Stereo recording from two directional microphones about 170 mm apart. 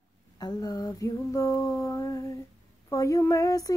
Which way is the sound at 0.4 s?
25° left (ahead or behind).